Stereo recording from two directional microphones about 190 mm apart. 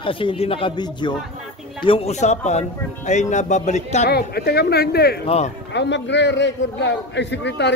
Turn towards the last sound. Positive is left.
turn(degrees=65)  # may be behind; listen again after turning